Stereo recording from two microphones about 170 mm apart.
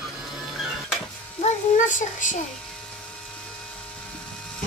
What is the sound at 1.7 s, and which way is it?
Speech, 50° left (ahead or behind).